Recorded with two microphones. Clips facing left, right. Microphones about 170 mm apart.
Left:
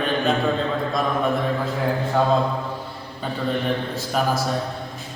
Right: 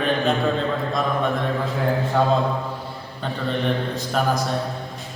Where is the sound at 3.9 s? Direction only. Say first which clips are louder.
Even; 5° left (ahead or behind).